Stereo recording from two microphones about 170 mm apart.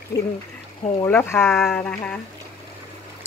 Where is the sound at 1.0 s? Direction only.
15° left (ahead or behind).